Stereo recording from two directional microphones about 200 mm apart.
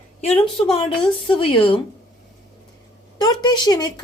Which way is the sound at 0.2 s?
30° left (ahead or behind).